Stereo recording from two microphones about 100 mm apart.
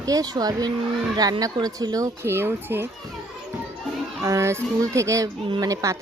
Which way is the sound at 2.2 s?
25° right (ahead or behind).